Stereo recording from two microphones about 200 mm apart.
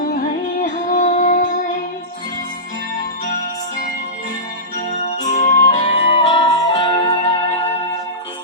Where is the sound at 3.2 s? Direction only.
40° left (ahead or behind).